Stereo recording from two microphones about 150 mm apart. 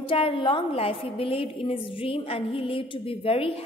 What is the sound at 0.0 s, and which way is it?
A woman's voice, 35° left (ahead or behind).